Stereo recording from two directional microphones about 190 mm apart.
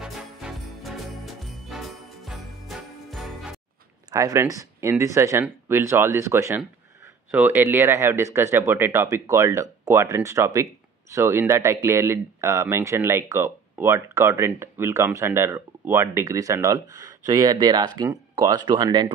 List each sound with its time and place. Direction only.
0.0 s jingle bell: centre (ahead or behind)
4.1 s speech: 15° right (ahead or behind)